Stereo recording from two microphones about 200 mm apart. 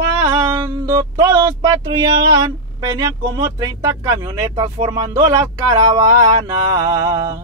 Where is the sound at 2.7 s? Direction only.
20° right (ahead or behind).